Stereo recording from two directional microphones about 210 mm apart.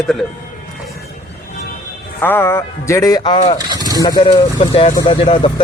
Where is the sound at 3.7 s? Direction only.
20° right (ahead or behind).